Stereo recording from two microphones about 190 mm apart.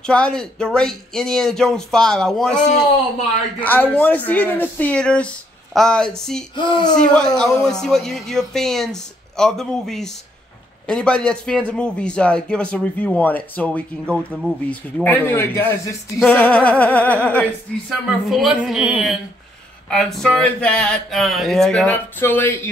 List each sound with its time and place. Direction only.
0.0 s a man's voice: 5° left (ahead or behind)
3.6 s speech: 10° left (ahead or behind)
6.5 s speech: 25° left (ahead or behind)
7.0 s a man's voice: 5° left (ahead or behind)